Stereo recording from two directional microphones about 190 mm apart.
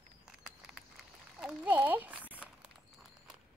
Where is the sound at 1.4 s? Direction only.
5° right (ahead or behind).